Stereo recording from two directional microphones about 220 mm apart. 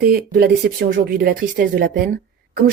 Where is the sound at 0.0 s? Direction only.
40° right (ahead or behind).